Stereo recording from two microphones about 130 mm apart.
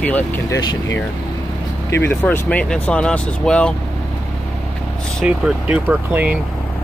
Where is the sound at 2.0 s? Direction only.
15° left (ahead or behind).